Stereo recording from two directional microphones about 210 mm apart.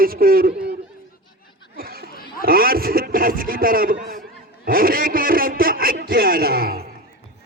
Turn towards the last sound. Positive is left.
turn(degrees=-45)  # may be behind; listen again after turning